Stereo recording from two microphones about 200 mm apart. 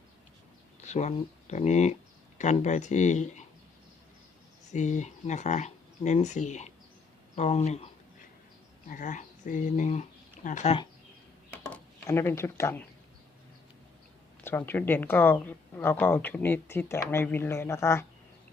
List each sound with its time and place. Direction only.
0.9 s speech: 35° left (ahead or behind)
4.7 s speech: 35° left (ahead or behind)
8.9 s speech: 40° left (ahead or behind)
11.7 s speech: 10° left (ahead or behind)
14.4 s speech: 10° left (ahead or behind)